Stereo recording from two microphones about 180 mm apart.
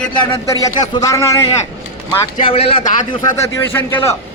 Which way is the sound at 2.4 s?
30° left (ahead or behind).